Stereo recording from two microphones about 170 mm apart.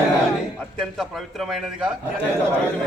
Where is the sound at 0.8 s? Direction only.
Centre (ahead or behind).